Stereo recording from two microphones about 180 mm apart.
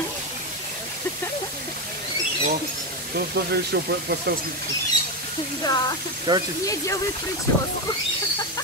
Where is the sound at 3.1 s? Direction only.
65° right (ahead or behind).